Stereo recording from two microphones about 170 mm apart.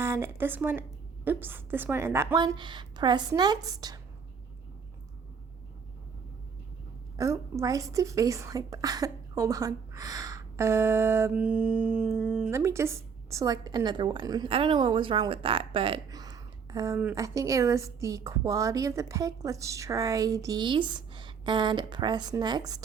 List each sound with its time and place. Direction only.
0.0 s a woman's voice: 15° right (ahead or behind)
7.2 s a woman's voice: 20° right (ahead or behind)
12.5 s a woman's voice: 15° right (ahead or behind)